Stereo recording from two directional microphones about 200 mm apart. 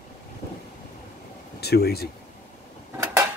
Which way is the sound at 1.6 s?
55° left (ahead or behind).